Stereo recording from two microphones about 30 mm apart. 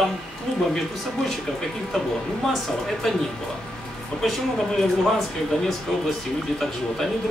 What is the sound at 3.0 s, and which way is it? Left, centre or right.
Speech, centre.